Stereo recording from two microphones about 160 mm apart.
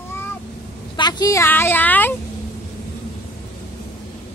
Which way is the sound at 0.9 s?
25° left (ahead or behind).